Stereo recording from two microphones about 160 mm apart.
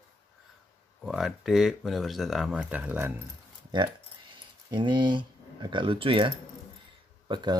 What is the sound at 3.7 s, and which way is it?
Keys jangling, 30° right (ahead or behind).